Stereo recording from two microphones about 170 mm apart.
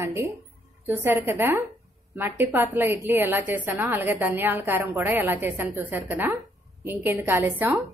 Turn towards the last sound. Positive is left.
turn(degrees=-10)  # may be behind; listen again after turning